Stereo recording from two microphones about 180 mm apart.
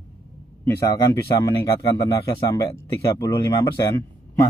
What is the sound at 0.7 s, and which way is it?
Speech, 15° left (ahead or behind).